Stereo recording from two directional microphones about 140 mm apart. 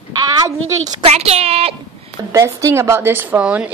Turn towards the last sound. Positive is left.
turn(degrees=-10)  # may be behind; listen again after turning